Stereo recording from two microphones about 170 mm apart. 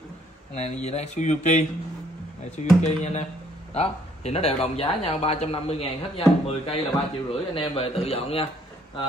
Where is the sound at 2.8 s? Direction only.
40° left (ahead or behind).